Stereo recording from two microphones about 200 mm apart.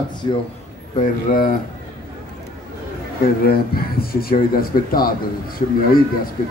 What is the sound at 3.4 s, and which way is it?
Speech, 50° left (ahead or behind).